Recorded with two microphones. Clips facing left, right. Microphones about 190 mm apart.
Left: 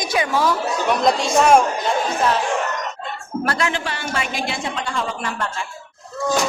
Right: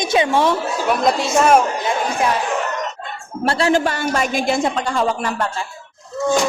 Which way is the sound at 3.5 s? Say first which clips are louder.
Right 8 dB; 35° right (ahead or behind).